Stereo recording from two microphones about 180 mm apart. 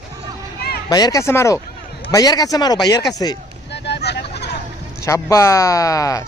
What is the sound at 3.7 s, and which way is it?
Hubbub, 70° left (ahead or behind).